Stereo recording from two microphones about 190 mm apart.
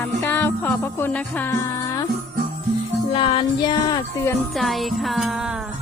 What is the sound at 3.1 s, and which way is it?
Music, 30° left (ahead or behind).